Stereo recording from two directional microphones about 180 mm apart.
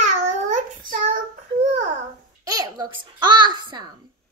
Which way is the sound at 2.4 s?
20° right (ahead or behind).